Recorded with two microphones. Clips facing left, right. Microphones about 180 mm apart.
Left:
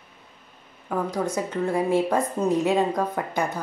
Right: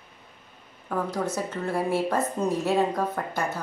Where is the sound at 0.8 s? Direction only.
10° left (ahead or behind).